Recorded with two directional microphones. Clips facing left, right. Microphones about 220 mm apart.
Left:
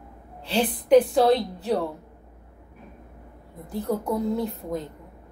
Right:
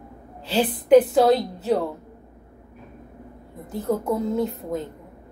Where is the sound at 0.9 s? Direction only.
20° right (ahead or behind).